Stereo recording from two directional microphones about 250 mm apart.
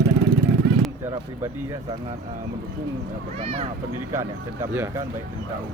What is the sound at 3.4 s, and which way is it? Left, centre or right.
Speech, right.